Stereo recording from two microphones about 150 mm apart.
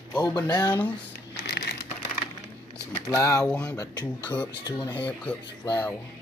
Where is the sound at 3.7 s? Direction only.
25° left (ahead or behind).